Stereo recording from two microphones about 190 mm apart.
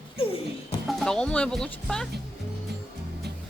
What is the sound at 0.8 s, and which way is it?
Speech, centre (ahead or behind).